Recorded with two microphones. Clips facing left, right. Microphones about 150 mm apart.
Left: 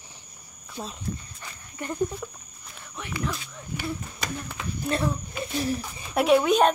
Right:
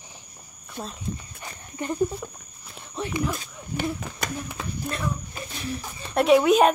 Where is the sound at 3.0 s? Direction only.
30° right (ahead or behind).